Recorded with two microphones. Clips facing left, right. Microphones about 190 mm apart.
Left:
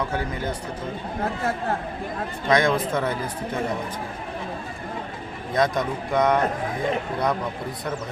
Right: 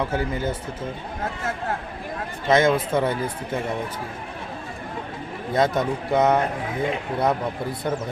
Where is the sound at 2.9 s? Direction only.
30° right (ahead or behind).